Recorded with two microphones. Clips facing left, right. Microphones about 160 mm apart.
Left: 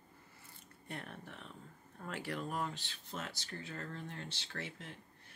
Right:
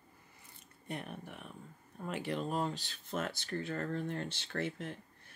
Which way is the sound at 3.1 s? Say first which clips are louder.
Right 8 dB; 55° right (ahead or behind).